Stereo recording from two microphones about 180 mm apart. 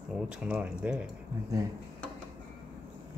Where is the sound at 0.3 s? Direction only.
5° right (ahead or behind).